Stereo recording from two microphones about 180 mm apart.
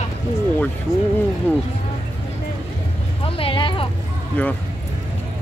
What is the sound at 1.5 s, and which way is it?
Speech, 10° left (ahead or behind).